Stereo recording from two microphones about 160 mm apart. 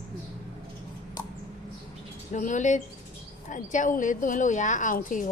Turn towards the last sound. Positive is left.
turn(degrees=55)  # may be behind; listen again after turning